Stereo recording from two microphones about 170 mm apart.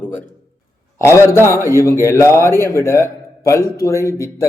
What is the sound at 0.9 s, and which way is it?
A man's voice, 15° left (ahead or behind).